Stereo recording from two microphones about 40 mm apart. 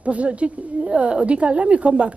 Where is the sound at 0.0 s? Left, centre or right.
Right.